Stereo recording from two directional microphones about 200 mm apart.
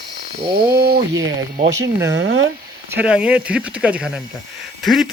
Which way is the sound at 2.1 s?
60° right (ahead or behind).